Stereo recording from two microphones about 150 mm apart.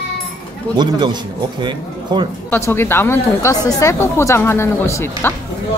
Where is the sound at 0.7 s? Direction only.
30° right (ahead or behind).